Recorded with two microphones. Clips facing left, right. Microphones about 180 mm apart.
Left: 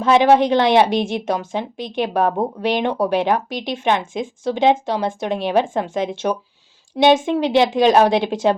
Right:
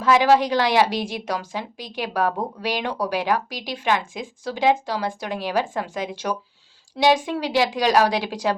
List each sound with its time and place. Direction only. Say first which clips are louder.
0.0 s a woman's voice: left 4 dB; 25° left (ahead or behind)